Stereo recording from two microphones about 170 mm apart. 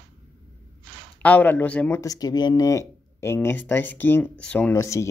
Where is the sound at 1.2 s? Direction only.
10° left (ahead or behind).